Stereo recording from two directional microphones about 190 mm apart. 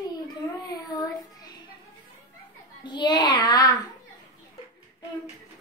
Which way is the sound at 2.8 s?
25° left (ahead or behind).